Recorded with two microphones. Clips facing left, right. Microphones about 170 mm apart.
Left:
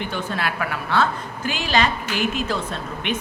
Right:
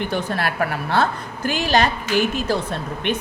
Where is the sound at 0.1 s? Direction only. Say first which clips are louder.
Right 3 dB; 40° right (ahead or behind).